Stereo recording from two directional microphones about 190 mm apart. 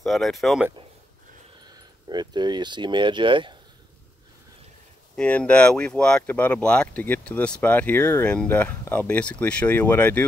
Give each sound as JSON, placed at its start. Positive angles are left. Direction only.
{"t": 0.0, "sound": "speech", "side_deg": 0}
{"t": 1.6, "sound": "speech", "side_deg": -20}
{"t": 5.1, "sound": "speech", "side_deg": 5}